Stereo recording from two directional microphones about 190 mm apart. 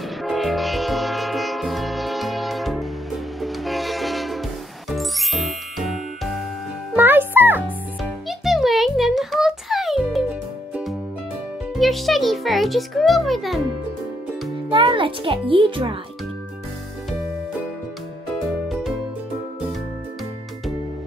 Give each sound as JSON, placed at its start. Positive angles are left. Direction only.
{"t": 0.2, "sound": "music", "side_deg": 0}
{"t": 7.0, "sound": "music", "side_deg": -10}
{"t": 7.6, "sound": "music", "side_deg": 0}
{"t": 11.7, "sound": "a child's voice", "side_deg": 0}
{"t": 14.7, "sound": "a child's voice", "side_deg": -25}
{"t": 18.7, "sound": "music", "side_deg": 0}